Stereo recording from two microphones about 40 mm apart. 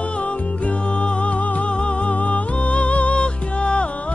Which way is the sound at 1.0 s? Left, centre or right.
Left.